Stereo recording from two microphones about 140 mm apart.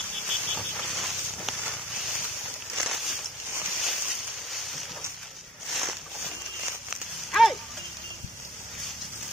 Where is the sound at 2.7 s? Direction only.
Centre (ahead or behind).